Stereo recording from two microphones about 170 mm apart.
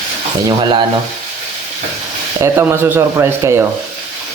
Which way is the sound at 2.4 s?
15° right (ahead or behind).